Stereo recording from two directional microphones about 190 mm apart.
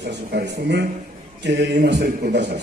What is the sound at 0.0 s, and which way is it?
A man's voice, 60° right (ahead or behind).